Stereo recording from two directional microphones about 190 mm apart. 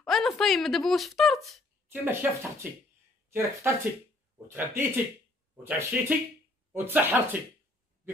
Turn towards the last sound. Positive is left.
turn(degrees=-10)  # may be behind; listen again after turning